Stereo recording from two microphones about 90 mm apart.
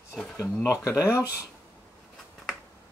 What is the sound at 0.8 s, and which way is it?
Speech, 30° left (ahead or behind).